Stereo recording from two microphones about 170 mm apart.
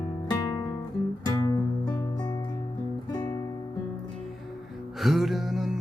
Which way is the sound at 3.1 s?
25° left (ahead or behind).